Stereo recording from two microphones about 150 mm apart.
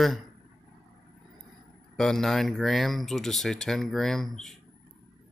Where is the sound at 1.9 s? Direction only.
5° left (ahead or behind).